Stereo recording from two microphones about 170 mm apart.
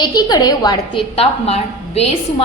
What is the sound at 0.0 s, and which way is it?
A woman's voice, 25° left (ahead or behind).